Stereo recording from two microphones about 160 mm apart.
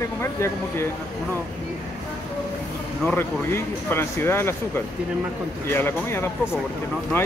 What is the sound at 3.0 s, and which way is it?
Speech, 10° left (ahead or behind).